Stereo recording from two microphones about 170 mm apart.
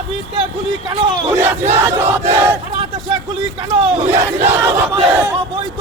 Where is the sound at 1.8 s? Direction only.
15° right (ahead or behind).